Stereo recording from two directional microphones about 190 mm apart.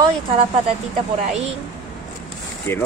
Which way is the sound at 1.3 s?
35° right (ahead or behind).